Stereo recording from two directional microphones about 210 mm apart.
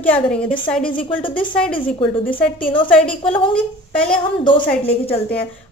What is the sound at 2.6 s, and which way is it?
Speech, 25° left (ahead or behind).